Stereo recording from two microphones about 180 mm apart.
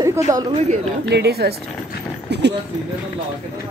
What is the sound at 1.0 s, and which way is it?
Speech, 65° right (ahead or behind).